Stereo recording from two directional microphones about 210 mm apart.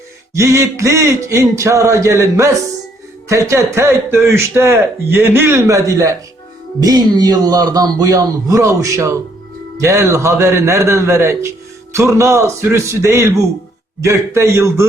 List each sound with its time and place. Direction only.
0.3 s a man's voice: 15° right (ahead or behind)